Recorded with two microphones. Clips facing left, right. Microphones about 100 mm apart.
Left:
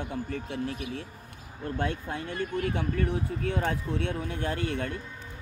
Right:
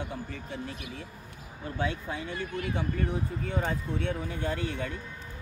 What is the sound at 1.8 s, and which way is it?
Speech, 55° left (ahead or behind).